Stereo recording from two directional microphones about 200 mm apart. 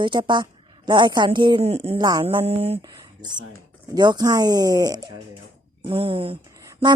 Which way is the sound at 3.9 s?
20° right (ahead or behind).